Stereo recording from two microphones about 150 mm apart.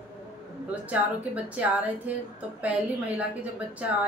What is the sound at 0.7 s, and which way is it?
A woman's voice, 10° right (ahead or behind).